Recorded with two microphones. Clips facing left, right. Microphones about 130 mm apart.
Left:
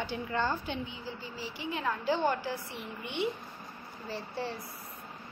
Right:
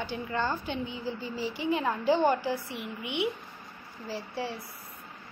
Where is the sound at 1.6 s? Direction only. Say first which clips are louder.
Right 5 dB; 20° right (ahead or behind).